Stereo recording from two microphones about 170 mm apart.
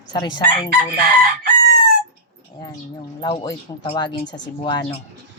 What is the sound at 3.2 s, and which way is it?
Speech, 25° left (ahead or behind).